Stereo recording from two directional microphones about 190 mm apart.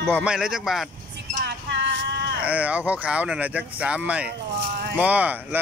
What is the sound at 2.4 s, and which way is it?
Speech, 5° right (ahead or behind).